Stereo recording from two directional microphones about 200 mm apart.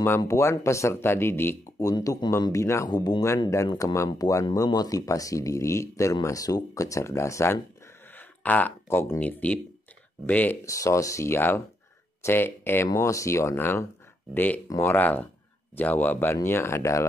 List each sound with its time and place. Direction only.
0.0 s speech: 15° left (ahead or behind)